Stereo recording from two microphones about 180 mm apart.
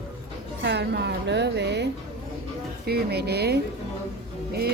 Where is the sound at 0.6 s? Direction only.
70° right (ahead or behind).